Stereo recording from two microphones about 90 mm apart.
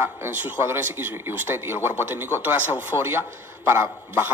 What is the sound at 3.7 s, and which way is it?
Speech, 25° right (ahead or behind).